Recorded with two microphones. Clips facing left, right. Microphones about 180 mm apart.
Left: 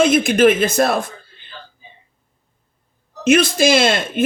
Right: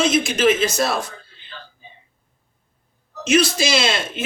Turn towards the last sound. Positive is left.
turn(degrees=50)  # may be behind; listen again after turning